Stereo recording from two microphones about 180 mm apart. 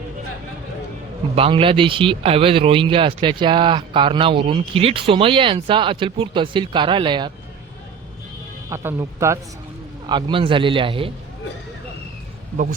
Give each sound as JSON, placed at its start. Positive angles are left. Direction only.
{"t": 1.4, "sound": "speech", "side_deg": -30}
{"t": 8.7, "sound": "speech", "side_deg": -15}